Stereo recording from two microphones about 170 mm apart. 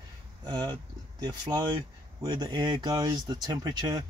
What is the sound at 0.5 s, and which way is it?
Speech, 25° right (ahead or behind).